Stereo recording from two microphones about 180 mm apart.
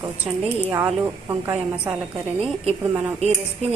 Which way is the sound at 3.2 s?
35° right (ahead or behind).